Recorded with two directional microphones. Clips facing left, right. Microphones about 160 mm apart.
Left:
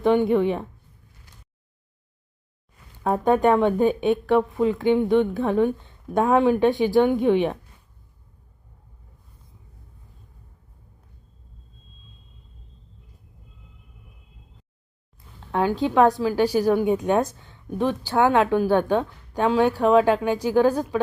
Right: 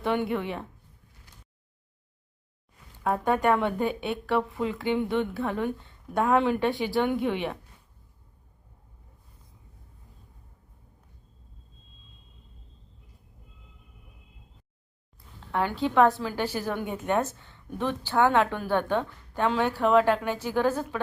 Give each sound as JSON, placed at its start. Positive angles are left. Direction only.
{"t": 0.0, "sound": "a woman's voice", "side_deg": 15}
{"t": 3.0, "sound": "a woman's voice", "side_deg": 20}
{"t": 15.5, "sound": "a woman's voice", "side_deg": 15}